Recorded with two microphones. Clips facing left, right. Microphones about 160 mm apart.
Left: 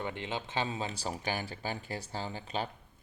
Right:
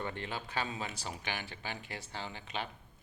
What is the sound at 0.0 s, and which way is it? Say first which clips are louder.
Speech: left 2 dB; 15° left (ahead or behind).